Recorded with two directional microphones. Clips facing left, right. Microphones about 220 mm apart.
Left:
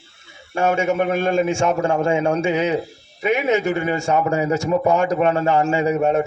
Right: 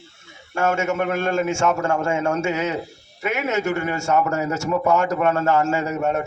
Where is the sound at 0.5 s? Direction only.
15° left (ahead or behind).